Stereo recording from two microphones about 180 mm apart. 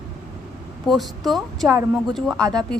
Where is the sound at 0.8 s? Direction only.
Centre (ahead or behind).